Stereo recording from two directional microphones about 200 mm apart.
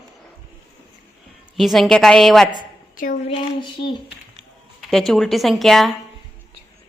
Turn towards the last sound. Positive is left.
turn(degrees=0)  # may be behind; listen again after turning